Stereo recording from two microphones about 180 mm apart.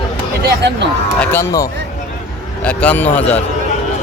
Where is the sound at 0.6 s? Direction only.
70° right (ahead or behind).